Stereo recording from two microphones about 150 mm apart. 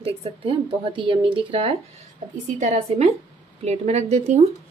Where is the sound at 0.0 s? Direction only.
40° right (ahead or behind).